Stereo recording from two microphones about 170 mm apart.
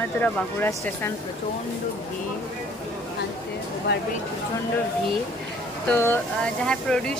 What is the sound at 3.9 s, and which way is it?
Speech, 75° left (ahead or behind).